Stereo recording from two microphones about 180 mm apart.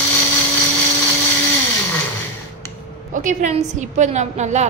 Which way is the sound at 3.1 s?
45° right (ahead or behind).